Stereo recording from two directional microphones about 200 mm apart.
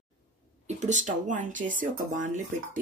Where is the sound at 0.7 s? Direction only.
35° right (ahead or behind).